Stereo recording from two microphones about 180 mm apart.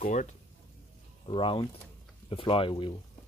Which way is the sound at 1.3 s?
30° left (ahead or behind).